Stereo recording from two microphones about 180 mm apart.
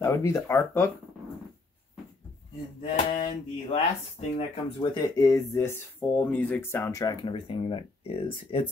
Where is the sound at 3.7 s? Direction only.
35° left (ahead or behind).